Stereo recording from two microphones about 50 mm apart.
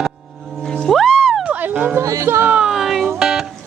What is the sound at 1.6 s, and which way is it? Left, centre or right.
Music, right.